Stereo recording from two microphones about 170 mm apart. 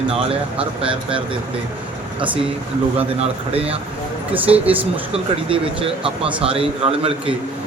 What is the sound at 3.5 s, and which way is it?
Speech, 35° right (ahead or behind).